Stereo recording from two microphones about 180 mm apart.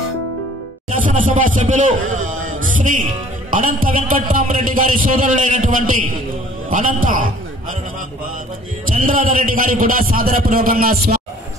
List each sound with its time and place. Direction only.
0.9 s a man's voice: 45° right (ahead or behind)
8.8 s a man's voice: 50° right (ahead or behind)